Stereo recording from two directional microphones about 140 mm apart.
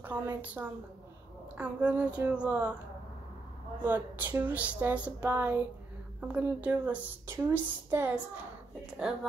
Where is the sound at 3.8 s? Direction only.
15° right (ahead or behind).